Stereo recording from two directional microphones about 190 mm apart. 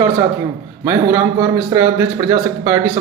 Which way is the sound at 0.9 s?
15° right (ahead or behind).